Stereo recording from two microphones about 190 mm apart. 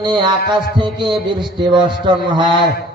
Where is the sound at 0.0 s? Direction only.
25° right (ahead or behind).